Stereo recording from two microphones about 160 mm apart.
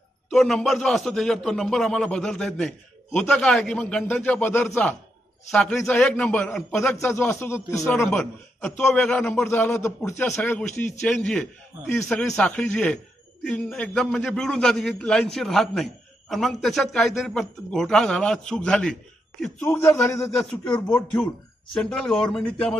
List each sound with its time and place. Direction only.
0.3 s a man's voice: centre (ahead or behind)
6.9 s speech: 15° left (ahead or behind)
8.8 s a man's voice: 5° left (ahead or behind)
9.4 s a man's voice: 15° left (ahead or behind)
19.6 s speech: 15° left (ahead or behind)
20.3 s a man's voice: centre (ahead or behind)
21.7 s a man's voice: 5° left (ahead or behind)